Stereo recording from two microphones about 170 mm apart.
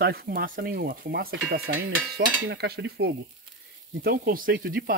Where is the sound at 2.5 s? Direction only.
80° right.